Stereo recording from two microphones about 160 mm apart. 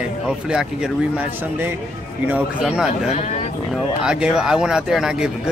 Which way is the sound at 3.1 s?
45° left (ahead or behind).